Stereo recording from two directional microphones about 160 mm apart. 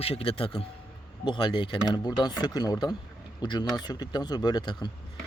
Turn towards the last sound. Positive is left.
turn(degrees=25)  # may be behind; listen again after turning